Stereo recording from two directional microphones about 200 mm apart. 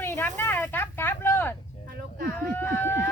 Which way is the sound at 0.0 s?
10° left (ahead or behind).